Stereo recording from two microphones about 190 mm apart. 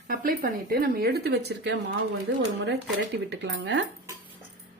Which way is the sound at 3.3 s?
70° right (ahead or behind).